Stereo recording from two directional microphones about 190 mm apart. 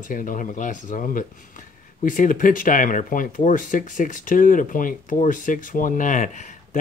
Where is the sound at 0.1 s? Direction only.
45° left (ahead or behind).